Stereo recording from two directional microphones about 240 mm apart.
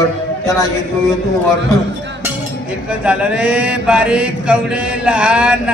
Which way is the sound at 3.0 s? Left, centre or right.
Centre.